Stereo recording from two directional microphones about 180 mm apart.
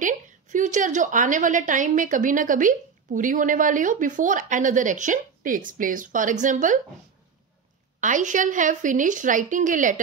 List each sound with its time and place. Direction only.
0.0 s a woman's voice: 45° right (ahead or behind)
8.0 s a woman's voice: 45° right (ahead or behind)